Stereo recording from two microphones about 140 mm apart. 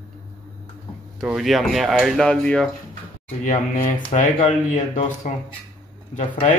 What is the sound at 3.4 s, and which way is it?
Speech, 70° left (ahead or behind).